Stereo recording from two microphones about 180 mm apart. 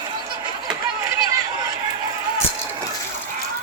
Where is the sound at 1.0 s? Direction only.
15° right (ahead or behind).